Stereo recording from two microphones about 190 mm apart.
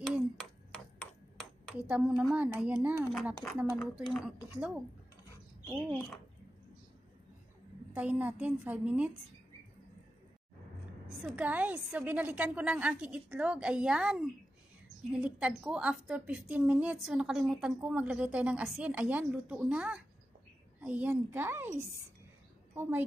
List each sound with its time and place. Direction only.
0.1 s a sound: centre (ahead or behind)
1.4 s a woman's voice: 5° right (ahead or behind)
5.9 s a woman's voice: 5° left (ahead or behind)
7.9 s a woman's voice: 10° right (ahead or behind)
11.2 s a woman's voice: 5° right (ahead or behind)